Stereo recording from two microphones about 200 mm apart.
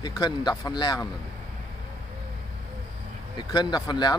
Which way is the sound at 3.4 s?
20° left (ahead or behind).